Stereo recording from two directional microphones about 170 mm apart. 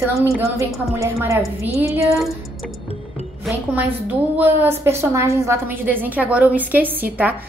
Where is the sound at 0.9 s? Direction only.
15° right (ahead or behind).